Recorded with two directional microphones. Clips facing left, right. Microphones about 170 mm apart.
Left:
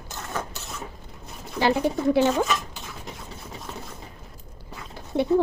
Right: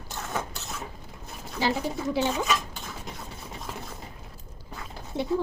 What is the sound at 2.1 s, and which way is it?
Speech, 60° left (ahead or behind).